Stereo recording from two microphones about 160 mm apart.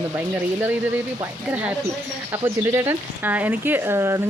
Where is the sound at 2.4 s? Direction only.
15° right (ahead or behind).